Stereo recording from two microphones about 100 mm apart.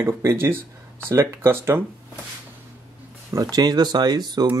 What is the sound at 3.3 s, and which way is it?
Speech, 40° right (ahead or behind).